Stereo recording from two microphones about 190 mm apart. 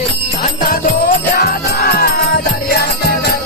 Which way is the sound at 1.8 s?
55° left (ahead or behind).